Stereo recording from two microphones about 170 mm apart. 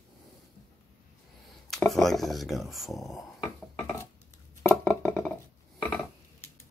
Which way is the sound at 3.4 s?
20° left (ahead or behind).